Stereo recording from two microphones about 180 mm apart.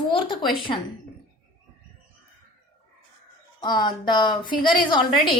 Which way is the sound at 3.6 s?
25° left (ahead or behind).